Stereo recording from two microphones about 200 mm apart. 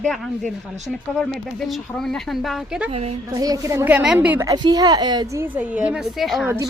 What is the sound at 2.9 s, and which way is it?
Speech, 30° right (ahead or behind).